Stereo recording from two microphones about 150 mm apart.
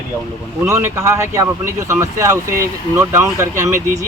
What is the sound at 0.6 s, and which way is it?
Speech, 20° right (ahead or behind).